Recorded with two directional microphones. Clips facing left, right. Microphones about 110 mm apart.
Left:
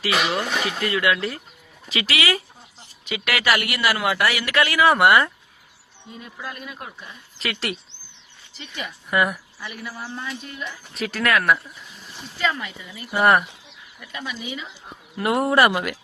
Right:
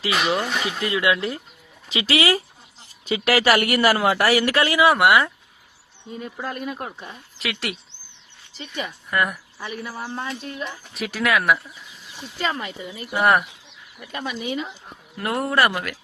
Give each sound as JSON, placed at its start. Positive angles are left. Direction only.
{"t": 0.8, "sound": "speech", "side_deg": -15}
{"t": 1.9, "sound": "speech", "side_deg": -30}
{"t": 4.8, "sound": "speech", "side_deg": -5}
{"t": 6.1, "sound": "speech", "side_deg": -35}
{"t": 7.3, "sound": "speech", "side_deg": -5}
{"t": 8.5, "sound": "speech", "side_deg": -35}
{"t": 9.0, "sound": "speech", "side_deg": 5}
{"t": 9.6, "sound": "speech", "side_deg": -35}
{"t": 10.9, "sound": "speech", "side_deg": -5}
{"t": 12.4, "sound": "speech", "side_deg": -35}
{"t": 13.1, "sound": "speech", "side_deg": 0}
{"t": 14.0, "sound": "speech", "side_deg": -45}
{"t": 15.2, "sound": "speech", "side_deg": 15}